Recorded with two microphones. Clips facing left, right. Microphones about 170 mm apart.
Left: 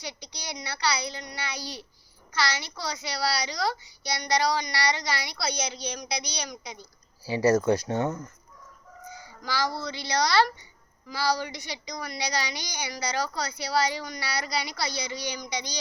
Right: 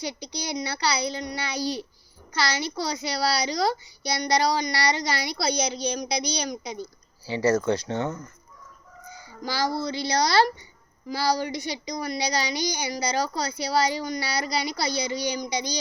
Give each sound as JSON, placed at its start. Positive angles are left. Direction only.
{"t": 0.0, "sound": "a woman's voice", "side_deg": -35}
{"t": 7.3, "sound": "speech", "side_deg": 15}
{"t": 9.4, "sound": "a woman's voice", "side_deg": -40}